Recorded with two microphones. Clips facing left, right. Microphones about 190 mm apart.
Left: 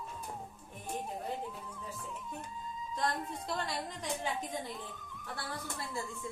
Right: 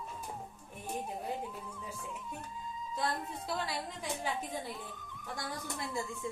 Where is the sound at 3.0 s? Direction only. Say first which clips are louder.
Left 1 dB; centre (ahead or behind).